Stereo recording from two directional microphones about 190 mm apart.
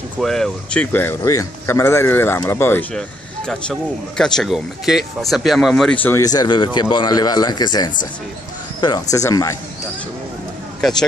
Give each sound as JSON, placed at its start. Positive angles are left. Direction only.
{"t": 0.2, "sound": "speech", "side_deg": 0}
{"t": 10.8, "sound": "speech", "side_deg": 5}